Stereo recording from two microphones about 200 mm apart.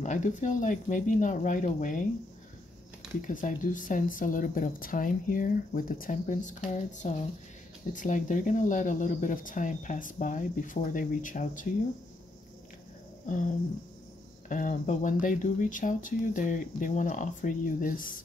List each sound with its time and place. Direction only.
0.0 s speech: 35° left (ahead or behind)
3.3 s speech: 40° left (ahead or behind)
14.5 s speech: 40° left (ahead or behind)